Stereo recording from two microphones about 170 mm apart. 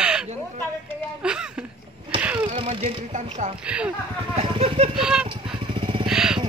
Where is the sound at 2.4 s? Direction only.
30° right (ahead or behind).